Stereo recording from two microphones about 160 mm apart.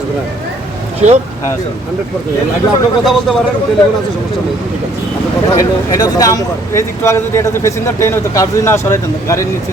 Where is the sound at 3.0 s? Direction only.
Centre (ahead or behind).